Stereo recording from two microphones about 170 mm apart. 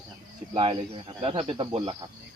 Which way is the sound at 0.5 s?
30° right (ahead or behind).